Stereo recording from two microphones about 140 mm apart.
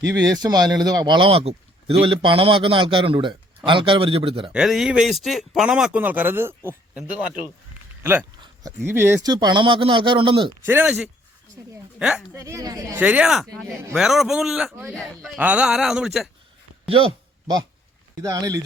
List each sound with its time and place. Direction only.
0.0 s speech: 25° right (ahead or behind)
4.5 s speech: 5° right (ahead or behind)
8.6 s speech: 15° right (ahead or behind)
9.2 s speech: 30° right (ahead or behind)
10.7 s speech: 10° right (ahead or behind)
12.3 s a woman's voice: 20° right (ahead or behind)
13.0 s speech: 10° right (ahead or behind)
14.9 s speech: 5° left (ahead or behind)
15.4 s speech: 10° right (ahead or behind)
18.2 s a woman's voice: 25° right (ahead or behind)